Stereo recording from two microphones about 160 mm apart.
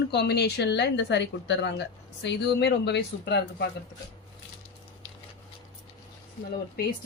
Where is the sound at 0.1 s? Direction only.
90° left.